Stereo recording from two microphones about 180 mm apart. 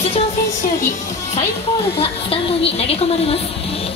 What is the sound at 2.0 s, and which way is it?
A woman's voice, 30° left (ahead or behind).